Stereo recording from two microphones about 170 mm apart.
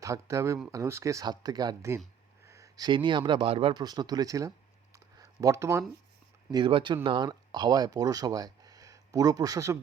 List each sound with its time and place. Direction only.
0.0 s speech: 20° right (ahead or behind)
5.1 s a sound: 20° right (ahead or behind)
6.5 s speech: 30° right (ahead or behind)